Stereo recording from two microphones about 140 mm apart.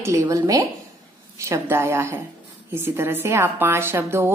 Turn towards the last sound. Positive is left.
turn(degrees=-15)  # may be behind; listen again after turning